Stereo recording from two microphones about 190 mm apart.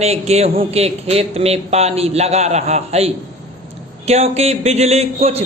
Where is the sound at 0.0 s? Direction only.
35° right (ahead or behind).